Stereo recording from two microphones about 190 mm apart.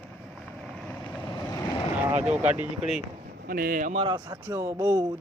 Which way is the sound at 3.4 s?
50° right (ahead or behind).